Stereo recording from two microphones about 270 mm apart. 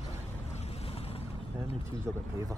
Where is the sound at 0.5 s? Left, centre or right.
Left.